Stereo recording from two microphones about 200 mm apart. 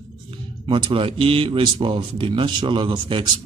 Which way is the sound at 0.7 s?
25° right (ahead or behind).